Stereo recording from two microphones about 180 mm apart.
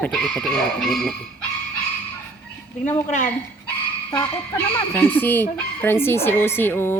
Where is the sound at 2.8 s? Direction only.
40° left (ahead or behind).